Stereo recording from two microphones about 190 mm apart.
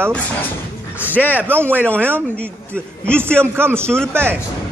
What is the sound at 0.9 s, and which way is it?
Music, 10° right (ahead or behind).